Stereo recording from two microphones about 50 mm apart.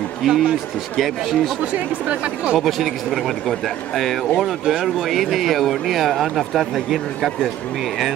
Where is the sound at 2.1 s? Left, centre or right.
Right.